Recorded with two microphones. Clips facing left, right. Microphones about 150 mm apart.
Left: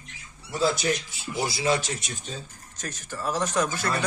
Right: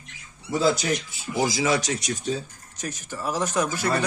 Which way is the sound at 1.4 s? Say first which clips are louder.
Right 1 dB; 90° right.